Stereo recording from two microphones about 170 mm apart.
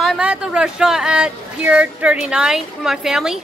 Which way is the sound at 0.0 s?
5° right (ahead or behind).